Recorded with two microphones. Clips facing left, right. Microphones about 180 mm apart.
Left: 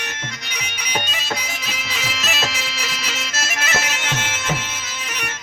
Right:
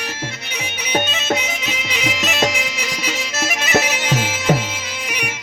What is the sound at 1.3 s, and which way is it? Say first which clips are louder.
Music: right 7 dB; 20° right (ahead or behind).